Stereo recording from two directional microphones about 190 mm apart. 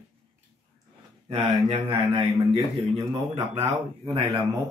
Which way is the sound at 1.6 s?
30° right (ahead or behind).